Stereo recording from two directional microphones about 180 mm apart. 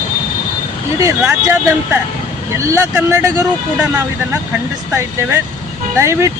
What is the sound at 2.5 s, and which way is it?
Speech, 15° right (ahead or behind).